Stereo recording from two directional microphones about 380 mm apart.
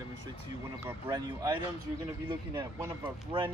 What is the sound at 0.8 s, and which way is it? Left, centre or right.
Speech, centre.